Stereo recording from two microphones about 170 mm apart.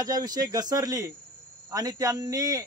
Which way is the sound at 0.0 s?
20° right (ahead or behind).